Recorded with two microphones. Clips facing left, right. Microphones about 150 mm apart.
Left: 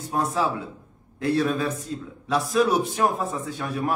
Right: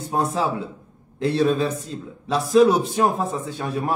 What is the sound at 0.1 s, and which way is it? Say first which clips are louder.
A man's voice: right 2 dB; 30° right (ahead or behind).